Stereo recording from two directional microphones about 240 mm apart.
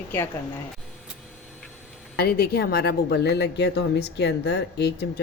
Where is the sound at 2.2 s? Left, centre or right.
Left.